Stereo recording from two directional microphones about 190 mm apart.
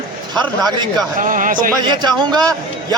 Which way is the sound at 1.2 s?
45° right (ahead or behind).